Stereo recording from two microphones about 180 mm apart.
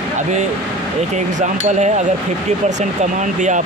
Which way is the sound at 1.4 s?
40° right (ahead or behind).